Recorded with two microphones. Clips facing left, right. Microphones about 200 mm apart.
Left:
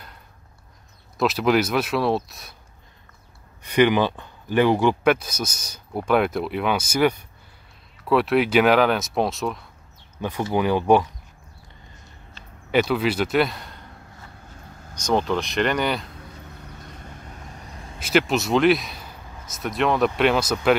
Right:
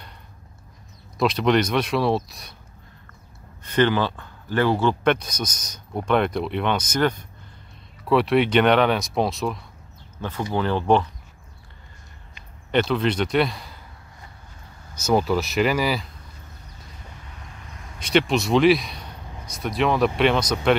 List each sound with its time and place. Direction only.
1.1 s speech: 5° left (ahead or behind)
3.6 s speech: 10° left (ahead or behind)
10.1 s speech: 15° left (ahead or behind)
12.7 s speech: 5° left (ahead or behind)
15.0 s speech: 5° right (ahead or behind)
17.6 s a sound: 35° left (ahead or behind)
17.9 s a man's voice: 5° left (ahead or behind)